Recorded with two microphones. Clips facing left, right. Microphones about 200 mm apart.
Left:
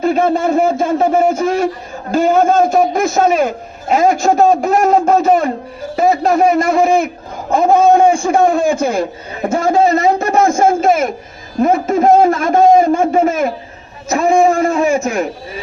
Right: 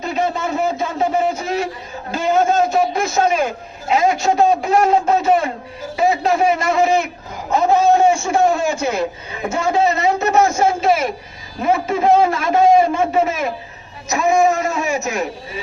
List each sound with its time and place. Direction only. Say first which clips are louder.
0.0 s a man's voice: left 7 dB; 50° left (ahead or behind)